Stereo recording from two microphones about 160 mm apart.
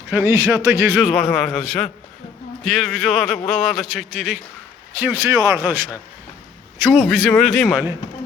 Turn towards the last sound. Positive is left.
turn(degrees=5)  # may be behind; listen again after turning